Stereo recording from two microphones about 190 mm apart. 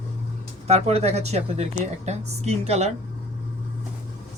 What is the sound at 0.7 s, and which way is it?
Speech, 35° right (ahead or behind).